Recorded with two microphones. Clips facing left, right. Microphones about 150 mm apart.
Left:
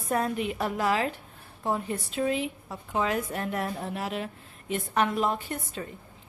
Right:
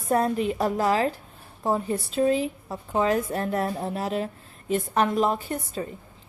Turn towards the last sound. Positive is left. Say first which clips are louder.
# right 5 dB
turn(degrees=-35)  # may be behind; listen again after turning